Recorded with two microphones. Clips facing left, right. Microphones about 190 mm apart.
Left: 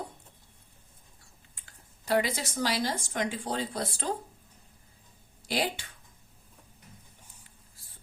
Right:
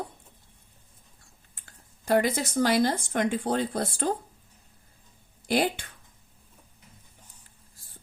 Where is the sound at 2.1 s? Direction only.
50° right (ahead or behind).